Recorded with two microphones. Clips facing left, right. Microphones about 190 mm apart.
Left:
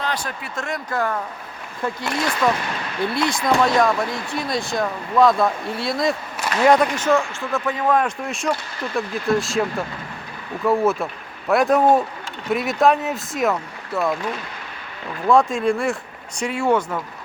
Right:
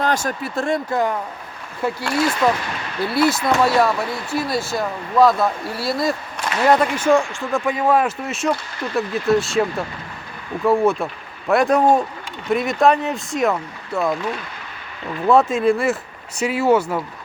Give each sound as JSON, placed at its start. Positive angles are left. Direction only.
{"t": 0.0, "sound": "speech", "side_deg": -45}
{"t": 1.8, "sound": "speech", "side_deg": -5}
{"t": 15.3, "sound": "speech", "side_deg": -5}